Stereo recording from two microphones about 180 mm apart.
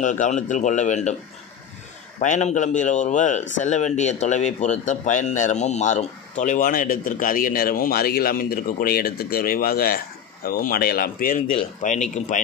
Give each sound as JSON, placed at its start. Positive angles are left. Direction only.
{"t": 0.0, "sound": "speech", "side_deg": 45}
{"t": 2.1, "sound": "speech", "side_deg": 40}
{"t": 11.5, "sound": "speech", "side_deg": 40}